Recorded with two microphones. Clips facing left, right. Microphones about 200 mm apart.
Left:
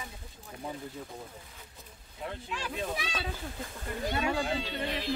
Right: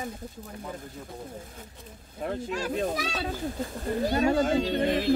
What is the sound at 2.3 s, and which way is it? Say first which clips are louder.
Speech: right 10 dB; 45° right (ahead or behind).